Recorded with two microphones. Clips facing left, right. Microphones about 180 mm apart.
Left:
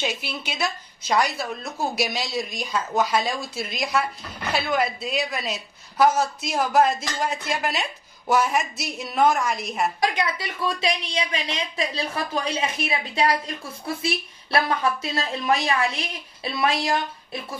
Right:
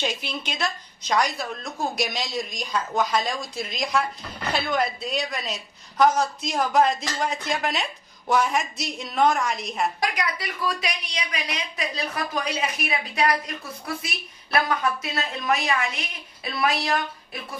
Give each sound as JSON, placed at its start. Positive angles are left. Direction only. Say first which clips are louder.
{"t": 0.0, "sound": "a woman's voice", "louder": "even", "side_deg": 5}
{"t": 10.0, "sound": "a woman's voice", "louder": "left 3 dB", "side_deg": 25}